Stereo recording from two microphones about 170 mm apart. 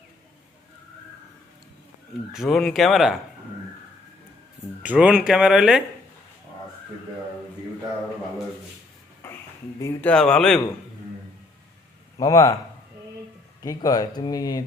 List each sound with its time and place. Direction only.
2.3 s speech: centre (ahead or behind)
4.8 s speech: 5° right (ahead or behind)
9.8 s speech: 10° left (ahead or behind)
12.1 s speech: 20° left (ahead or behind)
13.6 s speech: 20° left (ahead or behind)